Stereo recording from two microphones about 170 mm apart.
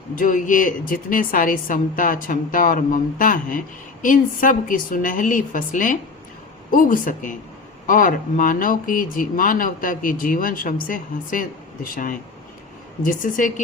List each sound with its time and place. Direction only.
0.2 s a woman's voice: 50° left (ahead or behind)